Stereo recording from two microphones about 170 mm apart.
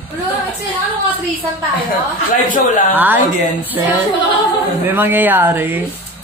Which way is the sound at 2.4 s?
50° left (ahead or behind).